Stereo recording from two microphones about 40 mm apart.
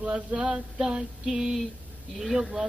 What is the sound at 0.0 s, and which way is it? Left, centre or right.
Female singing, centre.